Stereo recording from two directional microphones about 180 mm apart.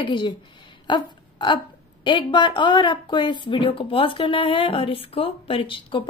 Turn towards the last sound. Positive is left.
turn(degrees=30)  # may be behind; listen again after turning